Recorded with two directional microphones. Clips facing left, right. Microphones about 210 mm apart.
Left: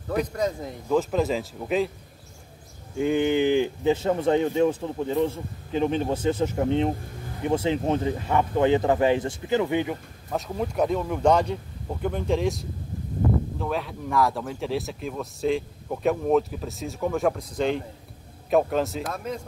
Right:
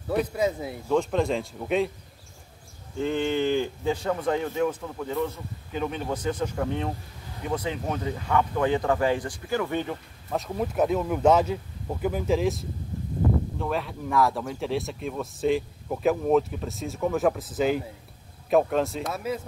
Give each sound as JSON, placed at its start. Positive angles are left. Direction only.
{"t": 0.1, "sound": "speech", "side_deg": -5}
{"t": 3.0, "sound": "speech", "side_deg": 15}
{"t": 10.3, "sound": "speech", "side_deg": 0}